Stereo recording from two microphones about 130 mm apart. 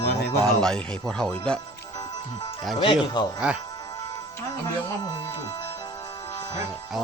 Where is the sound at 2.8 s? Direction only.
35° left (ahead or behind).